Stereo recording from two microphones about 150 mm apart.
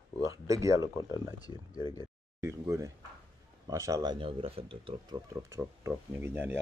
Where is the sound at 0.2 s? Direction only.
20° right (ahead or behind).